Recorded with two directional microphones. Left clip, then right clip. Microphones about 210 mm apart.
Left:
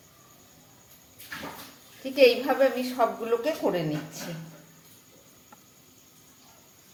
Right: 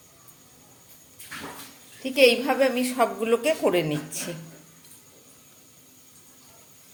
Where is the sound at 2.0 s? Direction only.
30° right (ahead or behind).